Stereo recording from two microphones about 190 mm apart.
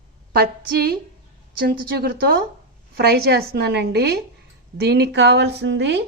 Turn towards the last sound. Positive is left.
turn(degrees=-70)  # may be behind; listen again after turning